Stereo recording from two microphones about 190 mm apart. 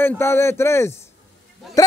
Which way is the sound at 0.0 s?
15° left (ahead or behind).